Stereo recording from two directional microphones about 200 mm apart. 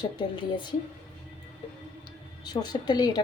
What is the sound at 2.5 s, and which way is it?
Speech, 20° left (ahead or behind).